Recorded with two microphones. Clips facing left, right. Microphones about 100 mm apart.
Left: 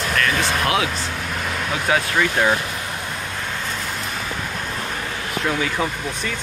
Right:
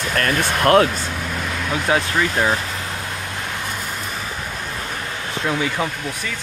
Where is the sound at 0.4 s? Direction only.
50° right (ahead or behind).